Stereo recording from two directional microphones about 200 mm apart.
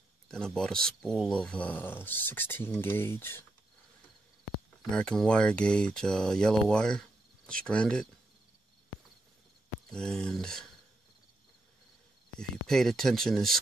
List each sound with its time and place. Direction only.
0.3 s speech: 5° left (ahead or behind)
4.9 s speech: 5° left (ahead or behind)
9.8 s speech: 5° left (ahead or behind)
12.4 s speech: 5° left (ahead or behind)